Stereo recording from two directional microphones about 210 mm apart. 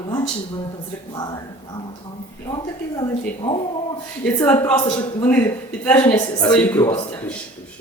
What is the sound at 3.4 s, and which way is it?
Speech, 25° left (ahead or behind).